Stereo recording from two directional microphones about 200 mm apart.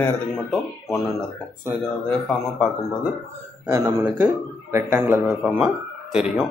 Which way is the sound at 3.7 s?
15° right (ahead or behind).